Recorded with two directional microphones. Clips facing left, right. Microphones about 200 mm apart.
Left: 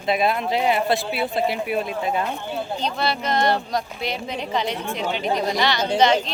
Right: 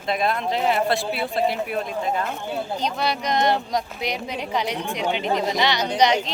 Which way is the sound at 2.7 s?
10° right (ahead or behind).